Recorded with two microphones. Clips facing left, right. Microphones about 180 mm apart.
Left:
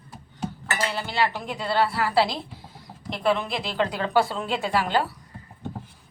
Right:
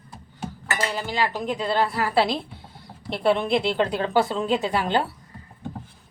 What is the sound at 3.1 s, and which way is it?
A woman's voice, 30° right (ahead or behind).